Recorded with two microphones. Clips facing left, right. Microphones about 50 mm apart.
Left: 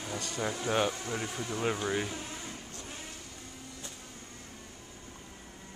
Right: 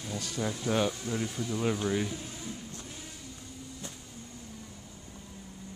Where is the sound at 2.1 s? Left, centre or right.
Left.